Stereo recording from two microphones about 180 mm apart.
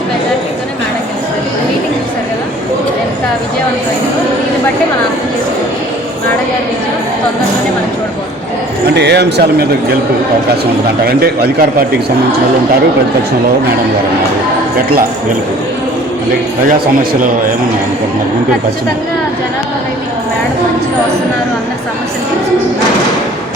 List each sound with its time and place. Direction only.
9.0 s a man's voice: 65° right (ahead or behind)